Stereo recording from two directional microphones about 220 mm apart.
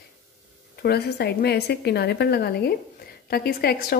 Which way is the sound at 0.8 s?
45° left (ahead or behind).